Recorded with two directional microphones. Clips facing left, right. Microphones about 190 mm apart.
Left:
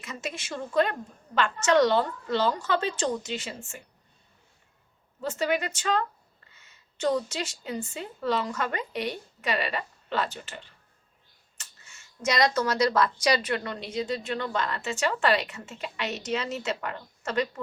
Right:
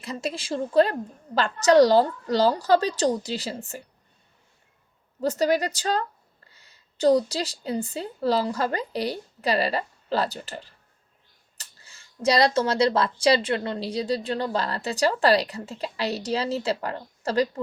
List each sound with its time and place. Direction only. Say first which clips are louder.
0.0 s speech: right 6 dB; 35° right (ahead or behind)
5.2 s a woman's voice: right 5 dB; 40° right (ahead or behind)